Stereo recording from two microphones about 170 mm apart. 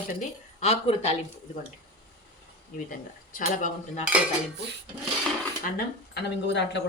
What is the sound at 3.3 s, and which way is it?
Speech, 55° left (ahead or behind).